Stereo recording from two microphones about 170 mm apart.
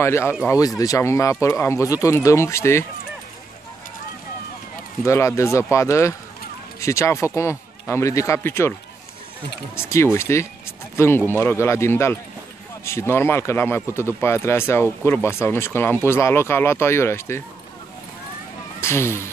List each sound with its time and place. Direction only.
0.0 s speech: 15° left (ahead or behind)
5.0 s speech: 15° left (ahead or behind)
9.8 s speech: 15° left (ahead or behind)
18.8 s speech: 15° left (ahead or behind)